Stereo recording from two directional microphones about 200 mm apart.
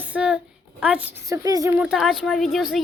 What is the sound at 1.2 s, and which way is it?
Speech, 15° right (ahead or behind).